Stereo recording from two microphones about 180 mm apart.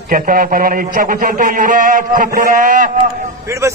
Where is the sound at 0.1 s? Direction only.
50° right (ahead or behind).